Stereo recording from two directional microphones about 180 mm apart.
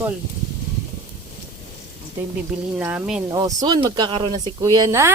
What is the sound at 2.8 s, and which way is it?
Speech, 10° right (ahead or behind).